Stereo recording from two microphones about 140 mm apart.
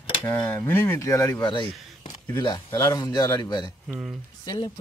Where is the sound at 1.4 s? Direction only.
35° left (ahead or behind).